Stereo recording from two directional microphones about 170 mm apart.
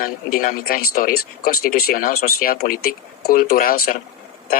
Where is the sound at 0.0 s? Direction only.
55° left (ahead or behind).